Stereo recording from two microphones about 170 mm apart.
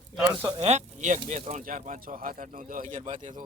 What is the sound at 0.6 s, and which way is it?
Speech, 40° right (ahead or behind).